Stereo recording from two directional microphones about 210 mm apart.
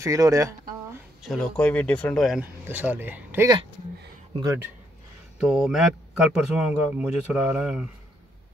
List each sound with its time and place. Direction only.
0.0 s speech: 15° right (ahead or behind)
1.2 s a man's voice: 5° left (ahead or behind)
5.4 s a man's voice: centre (ahead or behind)